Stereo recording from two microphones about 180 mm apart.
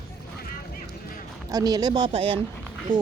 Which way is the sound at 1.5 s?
20° right (ahead or behind).